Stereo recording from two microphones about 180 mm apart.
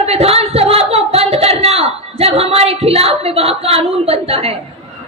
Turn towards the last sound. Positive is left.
turn(degrees=-35)  # may be behind; listen again after turning